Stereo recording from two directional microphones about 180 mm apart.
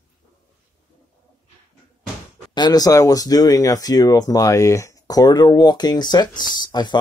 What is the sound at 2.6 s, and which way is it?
Speech, 20° left (ahead or behind).